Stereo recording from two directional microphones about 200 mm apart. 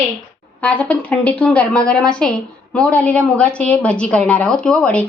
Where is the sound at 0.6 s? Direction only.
5° left (ahead or behind).